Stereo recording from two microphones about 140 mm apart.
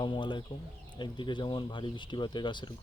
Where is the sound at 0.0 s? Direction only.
35° left (ahead or behind).